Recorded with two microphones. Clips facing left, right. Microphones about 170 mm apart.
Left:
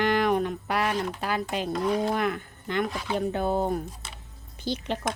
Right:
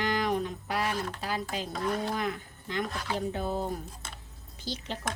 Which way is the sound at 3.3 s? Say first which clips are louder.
Left 6 dB; 65° left (ahead or behind).